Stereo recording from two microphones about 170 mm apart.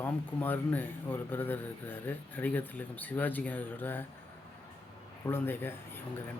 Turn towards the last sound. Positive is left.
turn(degrees=15)  # may be behind; listen again after turning